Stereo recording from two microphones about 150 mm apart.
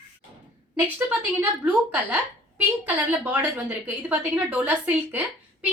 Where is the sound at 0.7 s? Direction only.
10° right (ahead or behind).